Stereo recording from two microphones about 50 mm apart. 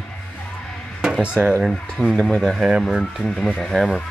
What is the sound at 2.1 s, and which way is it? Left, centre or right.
Speech, centre.